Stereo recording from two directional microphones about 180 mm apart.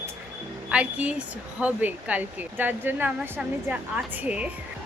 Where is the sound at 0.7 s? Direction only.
5° right (ahead or behind).